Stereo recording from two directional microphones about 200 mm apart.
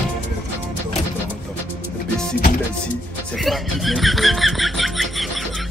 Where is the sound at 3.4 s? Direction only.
Centre (ahead or behind).